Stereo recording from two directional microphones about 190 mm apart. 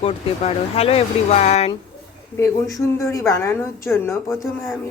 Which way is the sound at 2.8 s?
15° left (ahead or behind).